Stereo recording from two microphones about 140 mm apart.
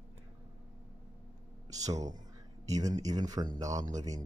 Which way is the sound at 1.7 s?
25° right (ahead or behind).